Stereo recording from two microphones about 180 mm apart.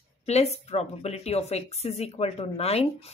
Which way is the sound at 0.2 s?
35° left (ahead or behind).